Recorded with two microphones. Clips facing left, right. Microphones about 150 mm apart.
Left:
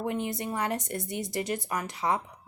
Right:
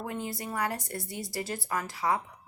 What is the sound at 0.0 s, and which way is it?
Speech, 20° left (ahead or behind).